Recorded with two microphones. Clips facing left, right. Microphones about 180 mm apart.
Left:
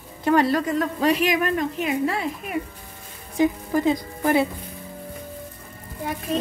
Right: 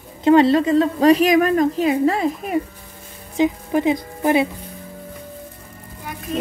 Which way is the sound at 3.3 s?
20° right (ahead or behind).